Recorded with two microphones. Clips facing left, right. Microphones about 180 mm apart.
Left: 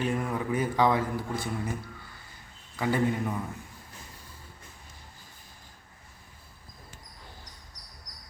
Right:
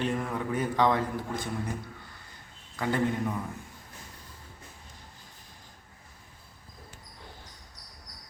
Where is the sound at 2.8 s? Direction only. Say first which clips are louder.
Left 1 dB; 5° left (ahead or behind).